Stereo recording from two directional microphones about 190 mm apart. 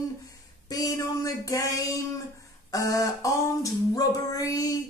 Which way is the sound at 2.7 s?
20° left (ahead or behind).